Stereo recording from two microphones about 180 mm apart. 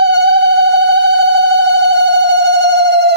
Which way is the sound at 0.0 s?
70° right (ahead or behind).